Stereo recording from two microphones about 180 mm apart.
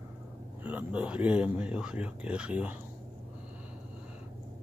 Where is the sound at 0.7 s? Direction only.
10° right (ahead or behind).